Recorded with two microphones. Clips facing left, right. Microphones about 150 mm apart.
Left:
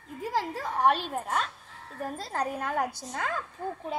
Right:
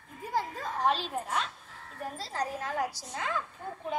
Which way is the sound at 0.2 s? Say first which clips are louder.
Left 2 dB; 90° left.